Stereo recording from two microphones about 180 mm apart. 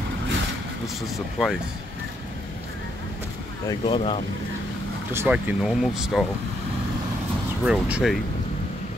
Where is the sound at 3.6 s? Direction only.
30° left (ahead or behind).